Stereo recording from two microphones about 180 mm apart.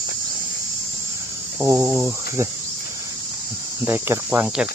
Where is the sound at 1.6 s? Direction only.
15° right (ahead or behind).